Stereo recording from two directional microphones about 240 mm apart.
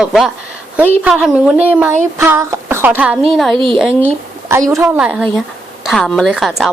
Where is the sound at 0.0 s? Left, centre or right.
Centre.